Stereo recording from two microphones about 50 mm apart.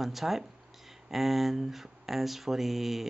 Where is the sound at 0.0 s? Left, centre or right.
Centre.